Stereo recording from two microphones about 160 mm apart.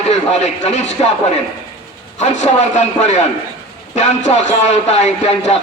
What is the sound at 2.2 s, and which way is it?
Speech, 45° left (ahead or behind).